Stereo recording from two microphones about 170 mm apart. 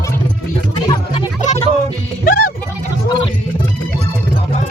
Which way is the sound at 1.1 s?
40° left (ahead or behind).